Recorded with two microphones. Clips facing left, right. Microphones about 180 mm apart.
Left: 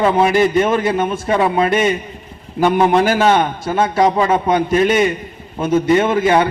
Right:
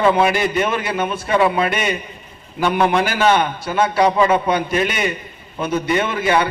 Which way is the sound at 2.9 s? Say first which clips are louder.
Left 3 dB; 40° left (ahead or behind).